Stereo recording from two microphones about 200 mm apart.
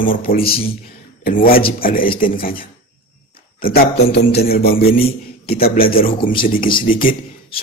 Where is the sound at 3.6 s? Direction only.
50° left (ahead or behind).